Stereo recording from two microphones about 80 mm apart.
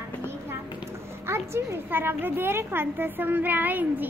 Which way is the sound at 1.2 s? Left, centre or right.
Right.